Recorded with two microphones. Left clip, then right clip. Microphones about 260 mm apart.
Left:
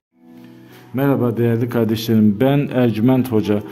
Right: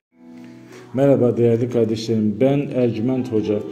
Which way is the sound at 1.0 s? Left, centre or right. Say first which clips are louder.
Right 3 dB; centre.